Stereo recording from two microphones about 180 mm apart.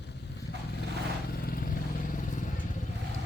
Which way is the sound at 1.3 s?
55° left (ahead or behind).